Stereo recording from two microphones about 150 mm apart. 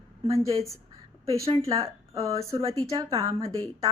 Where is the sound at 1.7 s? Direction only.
20° right (ahead or behind).